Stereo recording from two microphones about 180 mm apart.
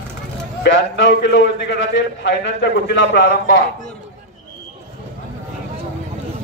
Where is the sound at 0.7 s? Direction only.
80° left.